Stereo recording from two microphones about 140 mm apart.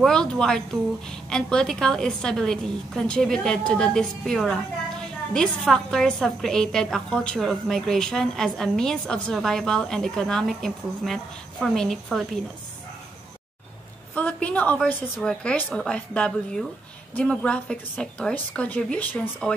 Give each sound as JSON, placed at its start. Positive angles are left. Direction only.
{"t": 0.0, "sound": "a woman's voice", "side_deg": 5}
{"t": 14.1, "sound": "a woman's voice", "side_deg": 10}